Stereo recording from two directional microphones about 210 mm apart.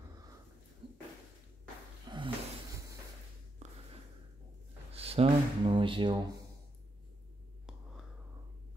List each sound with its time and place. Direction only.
2.0 s snort: 25° right (ahead or behind)
4.9 s speech: 30° right (ahead or behind)